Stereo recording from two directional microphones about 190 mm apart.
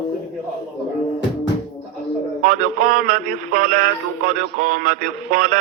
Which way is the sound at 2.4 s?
45° right (ahead or behind).